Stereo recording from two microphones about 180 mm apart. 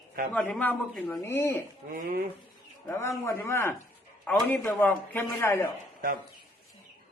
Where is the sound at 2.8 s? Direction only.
15° left (ahead or behind).